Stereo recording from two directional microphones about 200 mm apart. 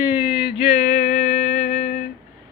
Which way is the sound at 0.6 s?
35° left (ahead or behind).